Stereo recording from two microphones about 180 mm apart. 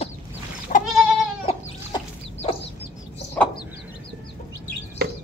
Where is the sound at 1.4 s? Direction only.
25° left (ahead or behind).